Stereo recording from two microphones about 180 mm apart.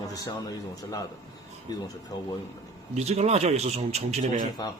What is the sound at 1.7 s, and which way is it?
Speech, 20° left (ahead or behind).